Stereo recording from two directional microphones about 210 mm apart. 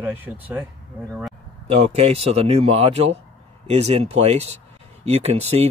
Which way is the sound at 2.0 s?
30° right (ahead or behind).